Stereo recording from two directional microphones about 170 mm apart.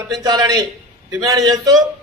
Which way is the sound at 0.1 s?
25° right (ahead or behind).